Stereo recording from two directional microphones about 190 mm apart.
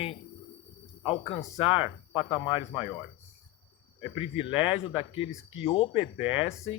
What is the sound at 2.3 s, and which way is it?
Speech, 25° left (ahead or behind).